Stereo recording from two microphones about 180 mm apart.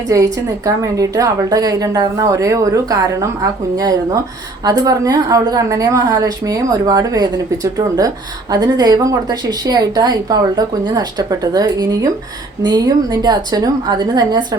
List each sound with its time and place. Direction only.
0.1 s a woman's voice: 20° right (ahead or behind)